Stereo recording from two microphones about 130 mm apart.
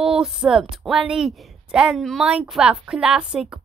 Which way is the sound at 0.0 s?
5° right (ahead or behind).